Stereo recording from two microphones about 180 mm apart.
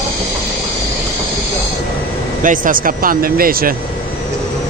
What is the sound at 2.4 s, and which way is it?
Speech, 50° right (ahead or behind).